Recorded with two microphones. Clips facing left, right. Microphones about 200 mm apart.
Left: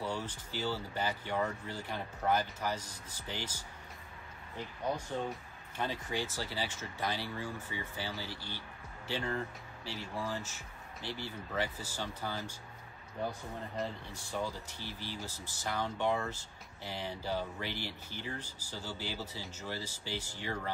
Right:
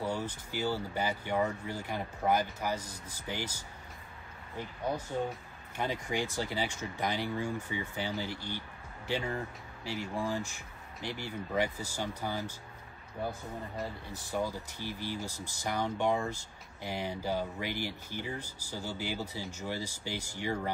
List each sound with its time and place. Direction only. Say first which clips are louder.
0.0 s speech: right 3 dB; 10° right (ahead or behind)
5.8 s speech: right 3 dB; 15° right (ahead or behind)
13.8 s speech: left 2 dB; centre (ahead or behind)
14.3 s speech: right 4 dB; 10° right (ahead or behind)